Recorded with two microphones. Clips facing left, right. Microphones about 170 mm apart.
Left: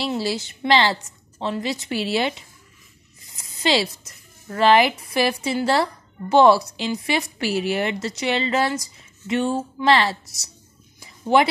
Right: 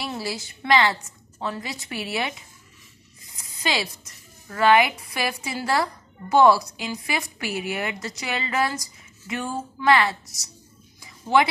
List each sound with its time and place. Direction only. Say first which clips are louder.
0.0 s speech: left 6 dB; 30° left (ahead or behind)
3.3 s a sound: left 6 dB; 25° left (ahead or behind)
4.5 s speech: left 2 dB; 30° left (ahead or behind)